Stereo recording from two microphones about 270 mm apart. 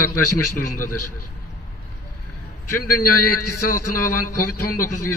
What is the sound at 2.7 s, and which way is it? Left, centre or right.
A man's voice, left.